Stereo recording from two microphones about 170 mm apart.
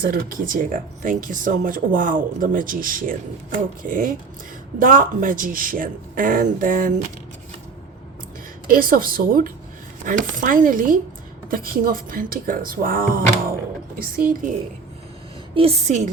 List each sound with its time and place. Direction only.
0.0 s speech: 60° right (ahead or behind)
8.6 s speech: 55° right (ahead or behind)
15.5 s a woman's voice: 35° right (ahead or behind)